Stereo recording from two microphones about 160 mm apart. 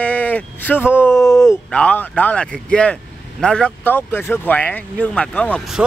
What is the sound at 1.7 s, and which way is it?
Speech, 5° left (ahead or behind).